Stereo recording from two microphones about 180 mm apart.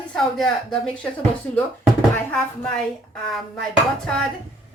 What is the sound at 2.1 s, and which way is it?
Speech, centre (ahead or behind).